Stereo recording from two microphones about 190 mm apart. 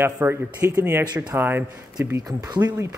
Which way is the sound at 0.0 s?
10° right (ahead or behind).